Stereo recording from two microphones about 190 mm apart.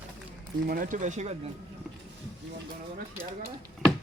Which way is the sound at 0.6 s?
50° right (ahead or behind).